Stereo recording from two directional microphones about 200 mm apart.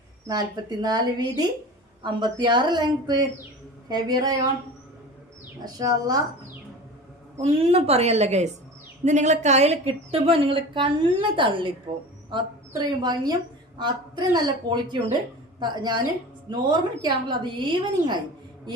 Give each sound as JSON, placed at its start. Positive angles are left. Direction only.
{"t": 0.3, "sound": "a woman's voice", "side_deg": -20}
{"t": 5.6, "sound": "a woman's voice", "side_deg": -20}
{"t": 7.4, "sound": "a woman's voice", "side_deg": -30}